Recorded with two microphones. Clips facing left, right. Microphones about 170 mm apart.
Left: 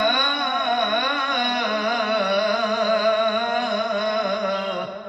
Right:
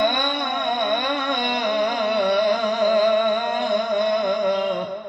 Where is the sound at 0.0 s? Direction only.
25° right (ahead or behind).